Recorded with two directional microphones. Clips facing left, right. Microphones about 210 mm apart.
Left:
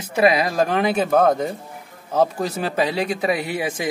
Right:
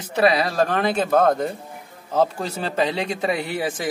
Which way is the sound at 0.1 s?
15° left (ahead or behind).